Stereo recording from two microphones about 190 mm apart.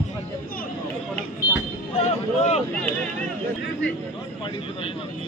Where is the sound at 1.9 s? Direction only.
35° left (ahead or behind).